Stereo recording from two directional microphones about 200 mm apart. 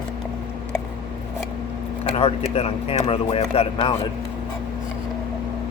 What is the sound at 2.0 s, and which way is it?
A man's voice, 30° left (ahead or behind).